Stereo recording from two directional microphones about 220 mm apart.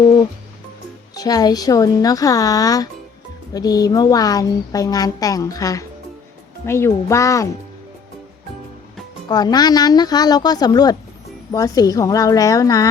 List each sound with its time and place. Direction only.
1.1 s a woman's voice: 15° left (ahead or behind)
9.3 s a woman's voice: 20° left (ahead or behind)